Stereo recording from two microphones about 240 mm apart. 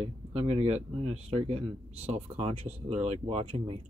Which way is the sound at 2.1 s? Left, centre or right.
Right.